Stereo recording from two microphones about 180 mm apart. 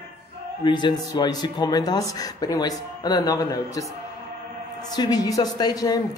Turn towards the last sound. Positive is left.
turn(degrees=20)  # may be behind; listen again after turning